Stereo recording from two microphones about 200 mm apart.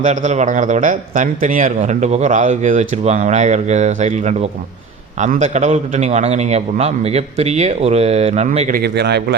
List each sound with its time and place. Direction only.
0.0 s a man's voice: 40° right (ahead or behind); by 9.2 s 55° right (ahead or behind)